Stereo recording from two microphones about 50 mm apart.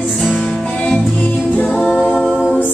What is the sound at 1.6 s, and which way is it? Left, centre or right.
A capella, centre.